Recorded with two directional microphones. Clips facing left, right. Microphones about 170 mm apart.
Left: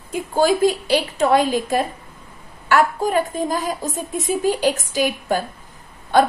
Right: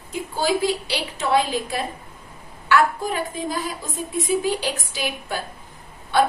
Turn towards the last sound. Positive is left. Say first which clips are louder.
# left 3 dB
turn(degrees=45)  # may be behind; listen again after turning